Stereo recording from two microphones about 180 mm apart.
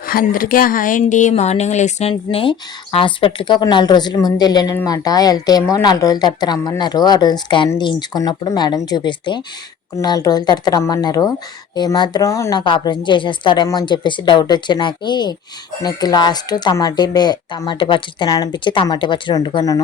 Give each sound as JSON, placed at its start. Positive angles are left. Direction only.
{"t": 0.1, "sound": "speech", "side_deg": 50}